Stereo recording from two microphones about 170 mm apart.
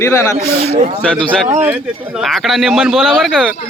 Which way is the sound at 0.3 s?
35° right (ahead or behind).